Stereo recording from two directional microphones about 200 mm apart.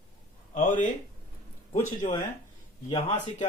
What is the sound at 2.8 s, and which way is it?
Speech, 30° left (ahead or behind).